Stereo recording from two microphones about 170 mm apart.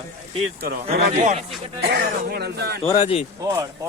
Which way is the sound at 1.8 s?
70° right (ahead or behind).